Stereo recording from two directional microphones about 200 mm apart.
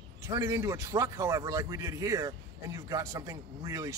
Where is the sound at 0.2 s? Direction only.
15° right (ahead or behind).